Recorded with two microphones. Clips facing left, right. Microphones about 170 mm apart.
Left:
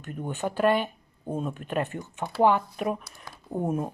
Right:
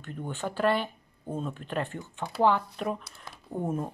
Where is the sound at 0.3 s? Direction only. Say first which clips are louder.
Left 3 dB; 15° left (ahead or behind).